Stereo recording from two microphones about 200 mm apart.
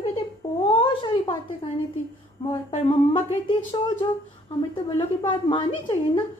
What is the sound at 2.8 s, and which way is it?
Speech, 25° left (ahead or behind).